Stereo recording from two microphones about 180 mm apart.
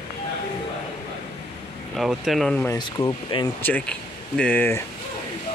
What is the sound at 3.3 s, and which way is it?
Speech, 30° left (ahead or behind).